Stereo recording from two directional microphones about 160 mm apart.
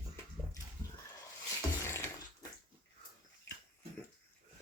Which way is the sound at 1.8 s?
15° left (ahead or behind).